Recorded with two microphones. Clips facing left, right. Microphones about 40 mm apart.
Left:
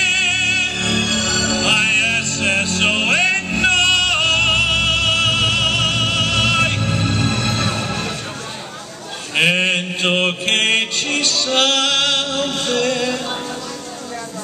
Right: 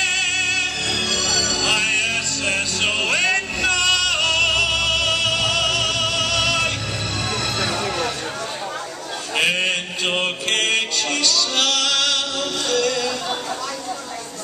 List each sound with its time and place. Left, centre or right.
0.0 s music: left
9.3 s mantra: left
10.4 s music: left